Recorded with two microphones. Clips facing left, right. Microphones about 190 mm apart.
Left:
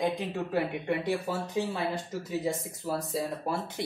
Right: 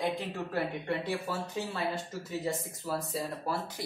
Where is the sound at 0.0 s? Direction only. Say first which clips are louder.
Left 3 dB; 15° left (ahead or behind).